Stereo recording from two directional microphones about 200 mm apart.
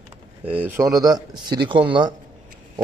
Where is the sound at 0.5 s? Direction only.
10° right (ahead or behind).